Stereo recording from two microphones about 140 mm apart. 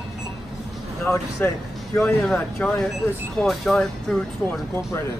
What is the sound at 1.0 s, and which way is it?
Speech, 20° left (ahead or behind).